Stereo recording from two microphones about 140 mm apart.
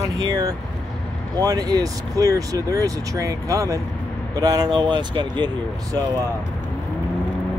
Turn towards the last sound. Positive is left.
turn(degrees=-30)  # may be behind; listen again after turning